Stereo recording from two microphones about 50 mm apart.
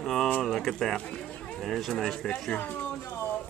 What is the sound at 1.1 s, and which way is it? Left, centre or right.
Livestock, centre.